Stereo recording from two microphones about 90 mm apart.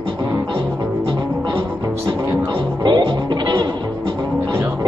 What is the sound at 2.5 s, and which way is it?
Music, 55° right (ahead or behind).